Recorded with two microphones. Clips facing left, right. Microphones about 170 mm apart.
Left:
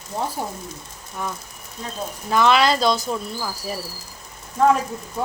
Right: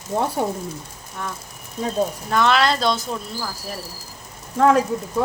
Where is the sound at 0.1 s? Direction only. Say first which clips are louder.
Right 4 dB; 50° right (ahead or behind).